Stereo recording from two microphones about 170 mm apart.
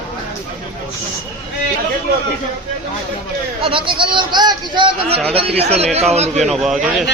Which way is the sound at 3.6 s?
30° right (ahead or behind).